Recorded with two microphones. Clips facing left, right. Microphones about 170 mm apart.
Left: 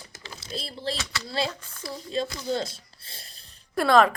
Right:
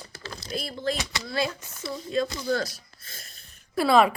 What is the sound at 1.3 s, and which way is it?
Speech, 30° left (ahead or behind).